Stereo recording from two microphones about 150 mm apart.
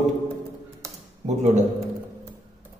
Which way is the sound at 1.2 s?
35° right (ahead or behind).